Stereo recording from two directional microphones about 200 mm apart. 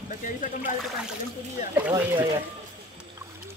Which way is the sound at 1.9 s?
10° right (ahead or behind).